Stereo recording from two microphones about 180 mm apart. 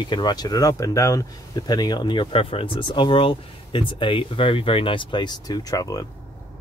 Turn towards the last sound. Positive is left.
turn(degrees=20)  # may be behind; listen again after turning